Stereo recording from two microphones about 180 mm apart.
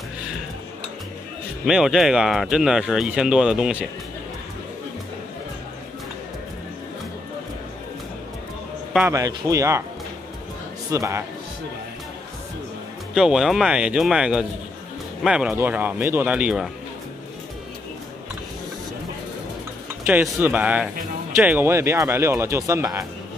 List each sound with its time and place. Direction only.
1.7 s speech: 5° right (ahead or behind)
9.1 s speech: 20° right (ahead or behind)
10.9 s speech: 15° right (ahead or behind)
13.1 s speech: centre (ahead or behind)
20.1 s speech: 10° right (ahead or behind)